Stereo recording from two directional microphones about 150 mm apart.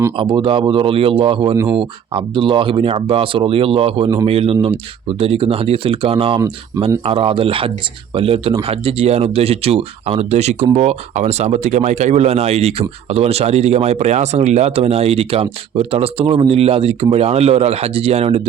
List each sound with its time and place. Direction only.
0.2 s speech: 35° right (ahead or behind)